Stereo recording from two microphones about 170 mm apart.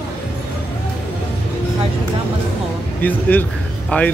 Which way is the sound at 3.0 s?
10° left (ahead or behind).